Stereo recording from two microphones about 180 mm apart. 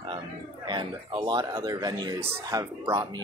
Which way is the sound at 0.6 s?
25° right (ahead or behind).